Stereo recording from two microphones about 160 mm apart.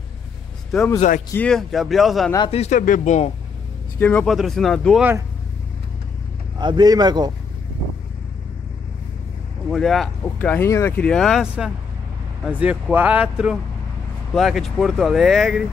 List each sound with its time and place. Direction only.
0.7 s speech: centre (ahead or behind)
2.5 s speech: 45° left (ahead or behind)
4.0 s speech: 10° left (ahead or behind)
6.6 s speech: 25° right (ahead or behind)
9.7 s speech: centre (ahead or behind)